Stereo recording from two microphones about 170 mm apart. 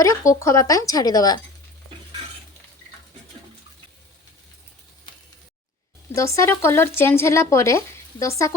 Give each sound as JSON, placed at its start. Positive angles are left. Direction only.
{"t": 0.0, "sound": "speech", "side_deg": 20}
{"t": 6.1, "sound": "speech", "side_deg": 20}